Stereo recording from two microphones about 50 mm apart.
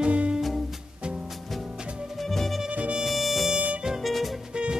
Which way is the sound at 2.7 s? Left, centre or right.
Right.